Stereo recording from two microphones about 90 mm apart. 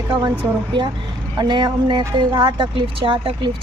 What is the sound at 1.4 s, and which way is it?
Speech, 55° right (ahead or behind).